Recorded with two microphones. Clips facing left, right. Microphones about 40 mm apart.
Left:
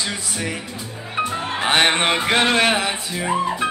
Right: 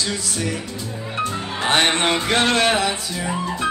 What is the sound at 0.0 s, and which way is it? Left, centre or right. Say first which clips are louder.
Music: right 1 dB; left.